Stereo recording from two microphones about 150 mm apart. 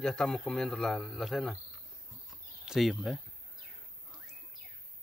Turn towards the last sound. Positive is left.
turn(degrees=0)  # may be behind; listen again after turning